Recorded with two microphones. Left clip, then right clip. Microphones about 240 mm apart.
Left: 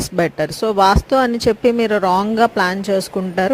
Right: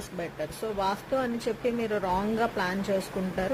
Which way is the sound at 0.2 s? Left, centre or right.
Left.